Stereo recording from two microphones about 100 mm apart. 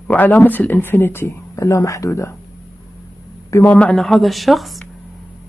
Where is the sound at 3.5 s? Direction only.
20° left (ahead or behind).